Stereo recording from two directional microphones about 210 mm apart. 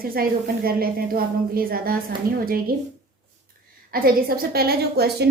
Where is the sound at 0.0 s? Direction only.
45° right (ahead or behind).